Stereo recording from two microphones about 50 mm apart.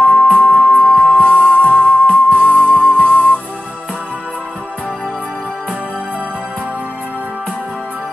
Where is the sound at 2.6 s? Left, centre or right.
Left.